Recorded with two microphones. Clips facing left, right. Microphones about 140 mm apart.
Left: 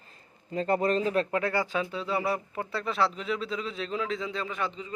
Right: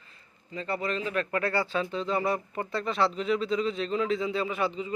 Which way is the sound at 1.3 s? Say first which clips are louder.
Even; 15° left (ahead or behind).